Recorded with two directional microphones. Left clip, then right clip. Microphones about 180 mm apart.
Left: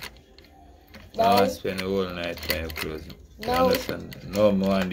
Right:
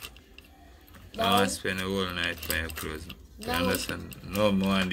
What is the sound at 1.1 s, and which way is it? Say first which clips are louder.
Speech: left 5 dB; 20° right (ahead or behind).